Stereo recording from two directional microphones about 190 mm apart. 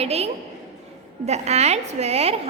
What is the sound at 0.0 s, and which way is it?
Speech, 35° right (ahead or behind).